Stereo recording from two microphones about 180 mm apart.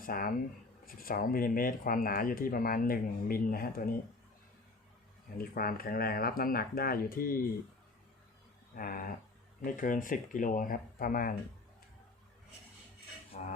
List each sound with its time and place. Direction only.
0.0 s speech: 50° left (ahead or behind)
5.4 s speech: 55° left (ahead or behind)
8.7 s speech: 50° left (ahead or behind)